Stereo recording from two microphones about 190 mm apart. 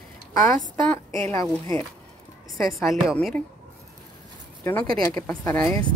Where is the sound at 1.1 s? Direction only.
15° left (ahead or behind).